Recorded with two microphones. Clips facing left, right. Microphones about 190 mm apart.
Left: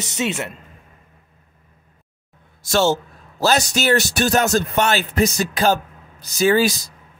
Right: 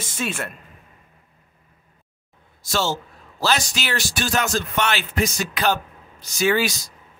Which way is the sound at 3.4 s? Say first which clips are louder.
Left 6 dB; 45° left (ahead or behind).